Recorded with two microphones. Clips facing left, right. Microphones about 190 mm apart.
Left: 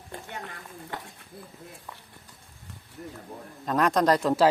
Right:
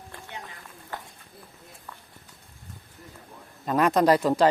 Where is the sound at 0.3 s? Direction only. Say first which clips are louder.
Left 2 dB; 60° left (ahead or behind).